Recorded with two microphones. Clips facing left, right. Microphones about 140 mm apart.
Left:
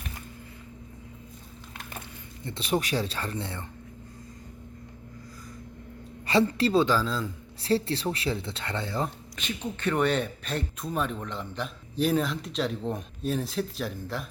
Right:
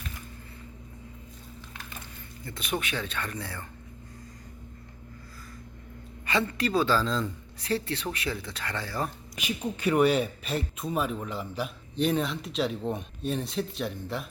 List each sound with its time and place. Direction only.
2.4 s speech: 30° left (ahead or behind)
6.2 s speech: 30° left (ahead or behind)
6.8 s speech: 10° left (ahead or behind)
7.6 s speech: 30° left (ahead or behind)
9.3 s speech: 10° right (ahead or behind)